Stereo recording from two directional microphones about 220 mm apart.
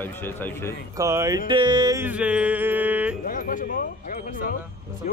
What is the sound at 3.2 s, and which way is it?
Speech, 40° left (ahead or behind).